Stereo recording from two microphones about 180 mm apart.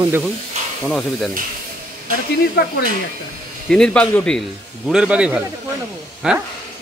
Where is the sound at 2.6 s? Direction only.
60° left (ahead or behind).